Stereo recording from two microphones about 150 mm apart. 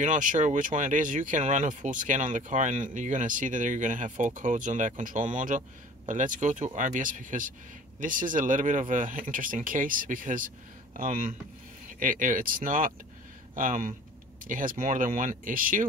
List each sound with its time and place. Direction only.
0.0 s speech: 60° right (ahead or behind)